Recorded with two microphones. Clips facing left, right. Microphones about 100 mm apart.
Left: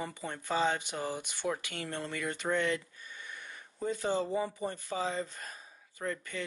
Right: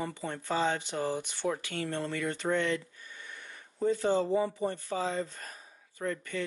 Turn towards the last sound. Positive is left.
turn(degrees=15)  # may be behind; listen again after turning